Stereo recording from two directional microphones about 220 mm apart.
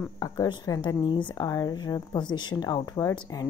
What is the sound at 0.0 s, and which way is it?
Speech, 15° left (ahead or behind).